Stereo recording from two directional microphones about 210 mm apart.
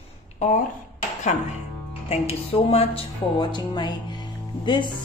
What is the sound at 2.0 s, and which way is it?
Speech, 30° left (ahead or behind).